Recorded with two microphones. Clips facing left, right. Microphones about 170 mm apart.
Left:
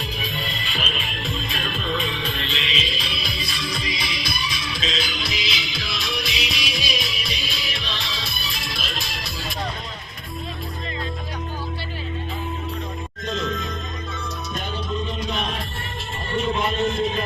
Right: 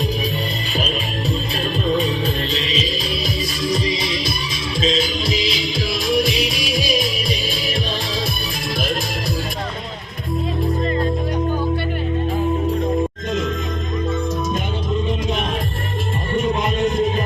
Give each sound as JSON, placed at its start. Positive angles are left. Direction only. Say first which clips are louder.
{"t": 0.7, "sound": "music", "louder": "right 7 dB", "side_deg": -40}
{"t": 4.8, "sound": "music", "louder": "right 10 dB", "side_deg": -30}
{"t": 5.2, "sound": "music", "louder": "right 8 dB", "side_deg": -45}